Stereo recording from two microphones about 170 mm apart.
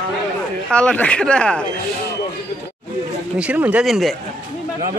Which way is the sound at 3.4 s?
10° right (ahead or behind).